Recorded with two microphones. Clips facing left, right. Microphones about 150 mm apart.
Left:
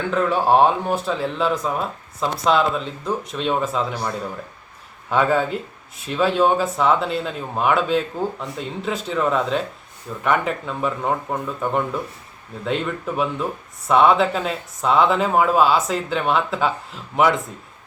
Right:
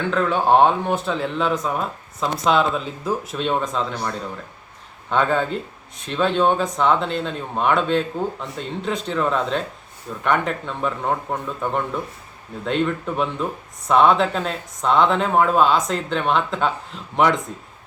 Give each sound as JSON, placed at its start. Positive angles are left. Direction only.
{"t": 0.1, "sound": "speech", "side_deg": 5}
{"t": 5.1, "sound": "speech", "side_deg": 5}